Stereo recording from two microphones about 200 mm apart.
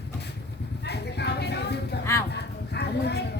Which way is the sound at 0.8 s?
55° left (ahead or behind).